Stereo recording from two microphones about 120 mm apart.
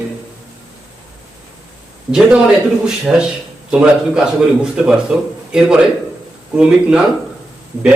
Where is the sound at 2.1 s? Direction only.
5° right (ahead or behind).